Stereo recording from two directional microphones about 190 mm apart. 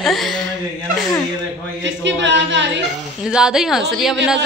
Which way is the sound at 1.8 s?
70° right (ahead or behind).